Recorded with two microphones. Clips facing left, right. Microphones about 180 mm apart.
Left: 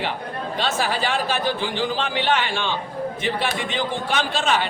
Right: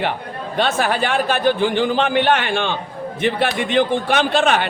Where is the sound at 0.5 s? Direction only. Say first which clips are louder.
Right 6 dB; 55° right (ahead or behind).